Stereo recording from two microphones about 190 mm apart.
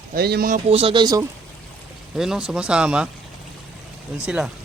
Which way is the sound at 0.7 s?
30° right (ahead or behind).